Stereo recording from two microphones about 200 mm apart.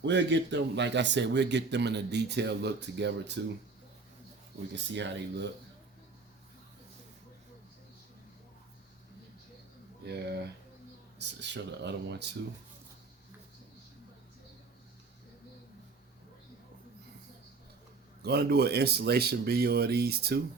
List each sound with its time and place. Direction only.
0.0 s speech: 60° right (ahead or behind)
4.7 s speech: 60° right (ahead or behind)
10.1 s speech: 55° right (ahead or behind)
18.2 s speech: 55° right (ahead or behind)